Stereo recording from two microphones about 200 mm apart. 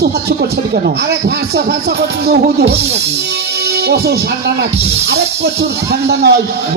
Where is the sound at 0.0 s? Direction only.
55° right (ahead or behind).